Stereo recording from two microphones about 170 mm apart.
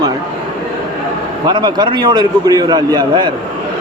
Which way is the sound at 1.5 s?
25° right (ahead or behind).